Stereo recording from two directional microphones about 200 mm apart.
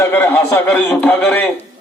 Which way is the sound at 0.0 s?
10° left (ahead or behind).